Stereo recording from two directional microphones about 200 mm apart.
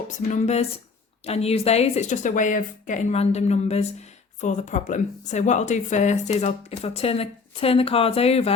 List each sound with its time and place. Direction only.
0.1 s speech: 35° left (ahead or behind)